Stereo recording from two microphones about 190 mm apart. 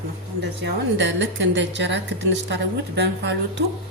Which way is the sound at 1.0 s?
70° right (ahead or behind).